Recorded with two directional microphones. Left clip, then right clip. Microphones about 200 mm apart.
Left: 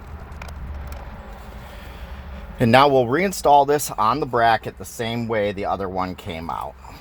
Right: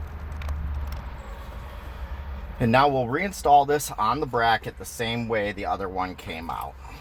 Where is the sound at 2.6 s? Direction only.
50° left (ahead or behind).